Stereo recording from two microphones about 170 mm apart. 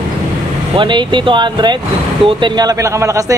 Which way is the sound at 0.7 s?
30° right (ahead or behind).